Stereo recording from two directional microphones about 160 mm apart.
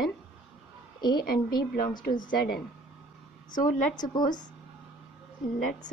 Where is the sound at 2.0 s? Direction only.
60° left (ahead or behind).